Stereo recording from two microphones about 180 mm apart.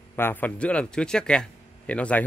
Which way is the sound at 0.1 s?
10° left (ahead or behind).